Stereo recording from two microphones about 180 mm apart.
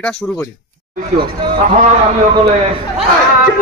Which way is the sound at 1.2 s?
25° right (ahead or behind).